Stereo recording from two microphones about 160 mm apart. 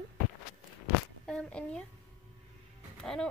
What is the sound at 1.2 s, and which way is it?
Speech, 5° left (ahead or behind).